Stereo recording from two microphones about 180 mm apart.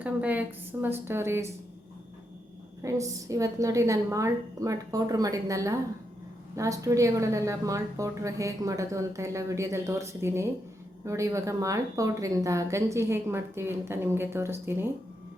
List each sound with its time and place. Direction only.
0.0 s a woman's voice: 10° right (ahead or behind)
2.8 s a woman's voice: 20° right (ahead or behind)